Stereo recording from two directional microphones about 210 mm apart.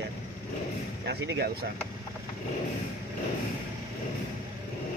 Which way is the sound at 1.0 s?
55° right (ahead or behind).